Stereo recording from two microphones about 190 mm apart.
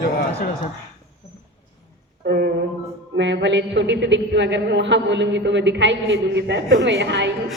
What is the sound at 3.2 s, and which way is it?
A man's voice, 70° right (ahead or behind).